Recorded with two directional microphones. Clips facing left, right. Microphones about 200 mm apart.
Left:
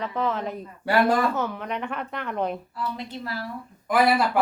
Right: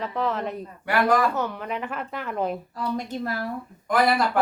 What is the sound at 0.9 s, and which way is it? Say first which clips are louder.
Speech: even; 30° left (ahead or behind).